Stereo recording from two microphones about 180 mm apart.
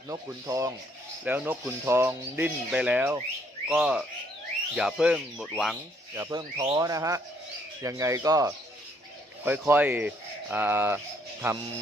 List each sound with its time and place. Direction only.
0.1 s speech: 20° right (ahead or behind); by 5.7 s centre (ahead or behind)
6.1 s speech: 15° right (ahead or behind)